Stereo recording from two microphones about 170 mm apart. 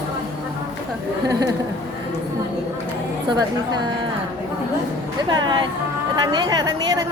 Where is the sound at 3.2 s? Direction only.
25° right (ahead or behind).